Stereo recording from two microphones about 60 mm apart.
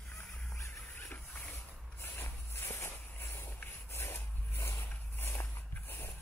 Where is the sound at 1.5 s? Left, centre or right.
Left.